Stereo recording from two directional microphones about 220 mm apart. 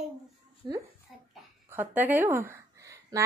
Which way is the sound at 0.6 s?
20° right (ahead or behind).